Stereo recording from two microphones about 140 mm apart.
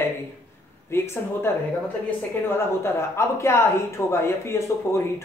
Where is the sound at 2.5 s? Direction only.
20° left (ahead or behind).